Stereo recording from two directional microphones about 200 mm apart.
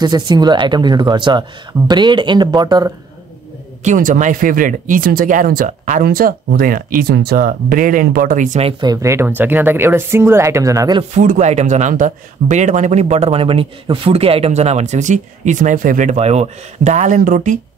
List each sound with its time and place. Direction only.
0.0 s speech: 20° right (ahead or behind)
3.8 s speech: 40° right (ahead or behind)
8.9 s speech: 15° right (ahead or behind)
11.1 s speech: 35° right (ahead or behind)